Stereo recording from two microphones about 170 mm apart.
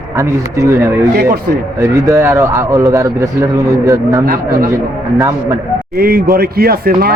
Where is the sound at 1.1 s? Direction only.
70° right (ahead or behind).